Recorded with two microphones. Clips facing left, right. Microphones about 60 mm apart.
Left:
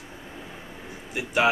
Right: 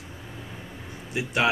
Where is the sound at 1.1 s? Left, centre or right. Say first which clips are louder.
Left 1 dB; centre.